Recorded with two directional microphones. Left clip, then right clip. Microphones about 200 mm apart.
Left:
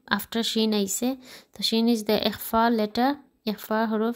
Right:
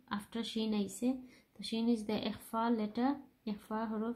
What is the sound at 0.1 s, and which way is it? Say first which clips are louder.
A woman's voice: left 15 dB; 50° left (ahead or behind).